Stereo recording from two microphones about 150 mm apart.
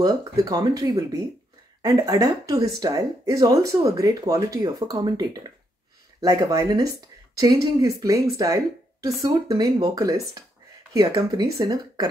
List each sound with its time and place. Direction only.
0.0 s speech: 25° right (ahead or behind)